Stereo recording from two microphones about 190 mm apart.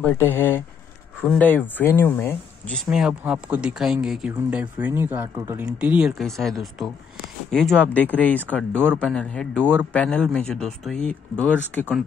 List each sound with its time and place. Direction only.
0.0 s speech: 10° left (ahead or behind)